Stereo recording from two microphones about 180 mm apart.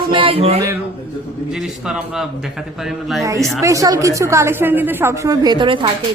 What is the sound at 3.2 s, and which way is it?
A woman's voice, 15° right (ahead or behind).